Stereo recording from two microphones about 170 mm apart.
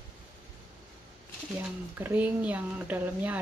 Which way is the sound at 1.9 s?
10° right (ahead or behind).